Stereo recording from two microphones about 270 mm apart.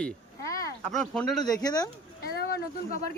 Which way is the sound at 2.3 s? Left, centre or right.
Left.